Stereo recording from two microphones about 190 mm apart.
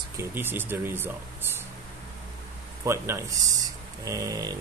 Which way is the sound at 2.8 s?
15° right (ahead or behind).